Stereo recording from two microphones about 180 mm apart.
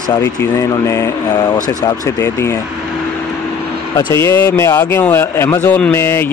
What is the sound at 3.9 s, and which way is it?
A man's voice, 15° left (ahead or behind).